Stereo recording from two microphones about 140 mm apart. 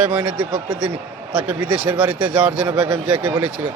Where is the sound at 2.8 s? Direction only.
25° right (ahead or behind).